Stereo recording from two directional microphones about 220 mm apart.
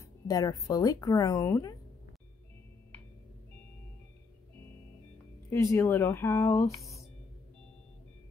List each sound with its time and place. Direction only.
0.0 s speech: 15° left (ahead or behind)
5.5 s speech: 15° left (ahead or behind)